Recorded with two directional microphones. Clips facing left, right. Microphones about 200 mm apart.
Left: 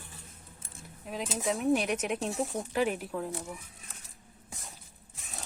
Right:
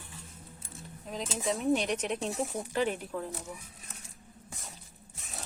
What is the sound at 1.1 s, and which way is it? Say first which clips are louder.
Speech: left 1 dB; 5° left (ahead or behind).